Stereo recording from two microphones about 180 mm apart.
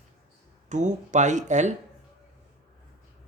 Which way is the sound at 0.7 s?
40° right (ahead or behind).